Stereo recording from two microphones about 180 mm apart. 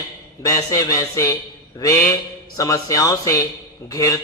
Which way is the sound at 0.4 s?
20° left (ahead or behind).